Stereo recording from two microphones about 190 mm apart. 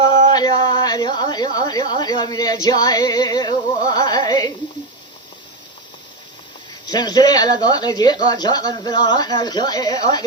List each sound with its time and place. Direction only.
0.3 s a woman's voice: 20° left (ahead or behind)
6.8 s a woman's voice: 20° left (ahead or behind)